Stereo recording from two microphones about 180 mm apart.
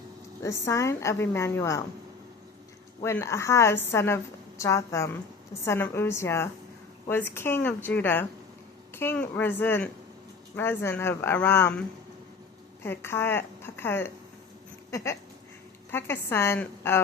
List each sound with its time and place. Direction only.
0.4 s a woman's voice: 15° left (ahead or behind)
3.0 s a woman's voice: 15° left (ahead or behind)
14.8 s a sound: 15° left (ahead or behind)
15.9 s a woman's voice: 10° left (ahead or behind)